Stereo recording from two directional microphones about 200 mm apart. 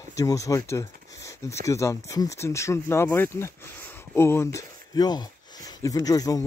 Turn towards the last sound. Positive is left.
turn(degrees=20)  # may be behind; listen again after turning